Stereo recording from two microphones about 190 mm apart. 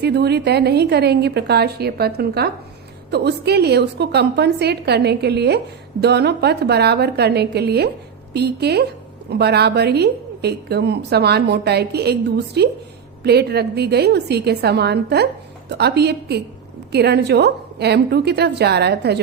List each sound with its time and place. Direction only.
0.0 s a woman's voice: 60° right (ahead or behind)